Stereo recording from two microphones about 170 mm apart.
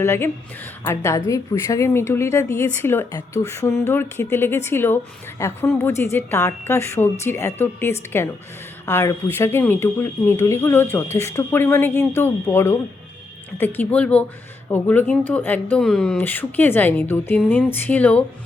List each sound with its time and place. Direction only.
0.0 s speech: 15° left (ahead or behind)